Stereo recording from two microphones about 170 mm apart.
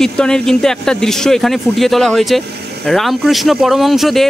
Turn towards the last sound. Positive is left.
turn(degrees=0)  # may be behind; listen again after turning